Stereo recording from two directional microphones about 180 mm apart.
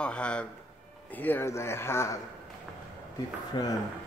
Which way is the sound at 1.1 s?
10° left (ahead or behind).